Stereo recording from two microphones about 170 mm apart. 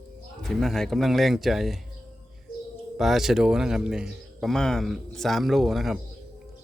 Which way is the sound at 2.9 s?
Centre (ahead or behind).